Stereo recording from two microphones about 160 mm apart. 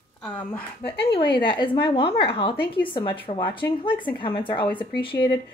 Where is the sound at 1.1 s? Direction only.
30° left (ahead or behind).